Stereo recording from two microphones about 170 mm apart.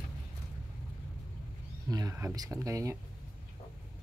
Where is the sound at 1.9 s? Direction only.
20° right (ahead or behind).